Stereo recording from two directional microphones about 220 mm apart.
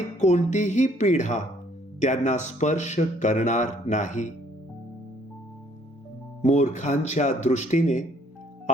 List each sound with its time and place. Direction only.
0.2 s speech: 30° left (ahead or behind)
6.4 s speech: 30° left (ahead or behind)